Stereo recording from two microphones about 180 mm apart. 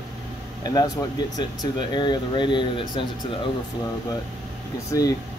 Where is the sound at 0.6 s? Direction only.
20° left (ahead or behind).